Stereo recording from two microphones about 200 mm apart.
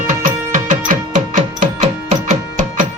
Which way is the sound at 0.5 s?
40° right (ahead or behind).